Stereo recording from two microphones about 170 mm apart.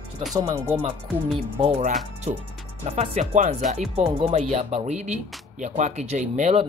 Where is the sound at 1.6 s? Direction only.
40° right (ahead or behind).